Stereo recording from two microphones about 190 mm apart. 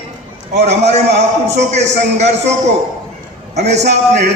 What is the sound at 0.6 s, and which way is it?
A man's voice, 35° right (ahead or behind).